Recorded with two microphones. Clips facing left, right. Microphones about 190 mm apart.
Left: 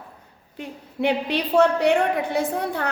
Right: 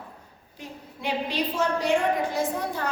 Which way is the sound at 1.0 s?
65° left (ahead or behind).